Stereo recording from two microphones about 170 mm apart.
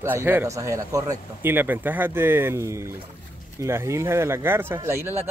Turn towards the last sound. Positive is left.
turn(degrees=-15)  # may be behind; listen again after turning